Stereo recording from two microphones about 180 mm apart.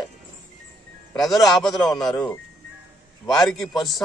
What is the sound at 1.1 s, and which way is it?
Speech, centre (ahead or behind).